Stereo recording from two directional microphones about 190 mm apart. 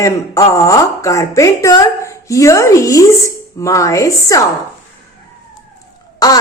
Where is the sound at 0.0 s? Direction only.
15° left (ahead or behind).